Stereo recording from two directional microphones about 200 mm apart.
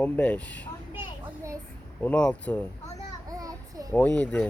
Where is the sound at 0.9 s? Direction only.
15° right (ahead or behind).